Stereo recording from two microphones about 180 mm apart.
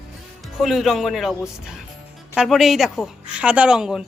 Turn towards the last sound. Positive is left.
turn(degrees=-5)  # may be behind; listen again after turning